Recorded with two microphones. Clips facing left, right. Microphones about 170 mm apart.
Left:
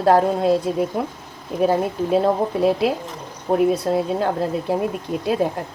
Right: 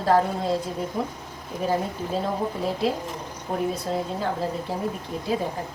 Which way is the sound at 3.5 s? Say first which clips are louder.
Left 9 dB; 50° left (ahead or behind).